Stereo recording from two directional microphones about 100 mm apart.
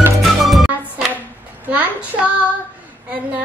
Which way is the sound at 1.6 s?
15° right (ahead or behind).